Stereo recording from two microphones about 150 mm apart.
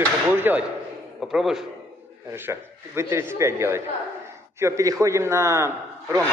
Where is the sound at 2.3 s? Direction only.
15° right (ahead or behind).